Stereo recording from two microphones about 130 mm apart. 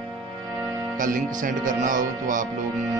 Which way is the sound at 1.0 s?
90° right.